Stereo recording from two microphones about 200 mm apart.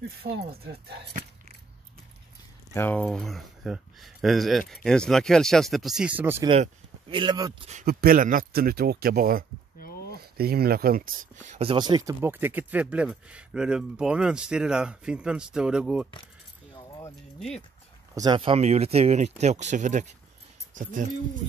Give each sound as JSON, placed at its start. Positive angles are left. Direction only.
{"t": 0.2, "sound": "speech", "side_deg": -40}
{"t": 2.7, "sound": "speech", "side_deg": 10}
{"t": 6.5, "sound": "speech", "side_deg": -25}
{"t": 7.8, "sound": "speech", "side_deg": -50}
{"t": 9.8, "sound": "a sound", "side_deg": 50}
{"t": 10.1, "sound": "speech", "side_deg": -50}
{"t": 11.3, "sound": "speech", "side_deg": -35}
{"t": 16.7, "sound": "keys jangling", "side_deg": 15}
{"t": 18.1, "sound": "speech", "side_deg": -20}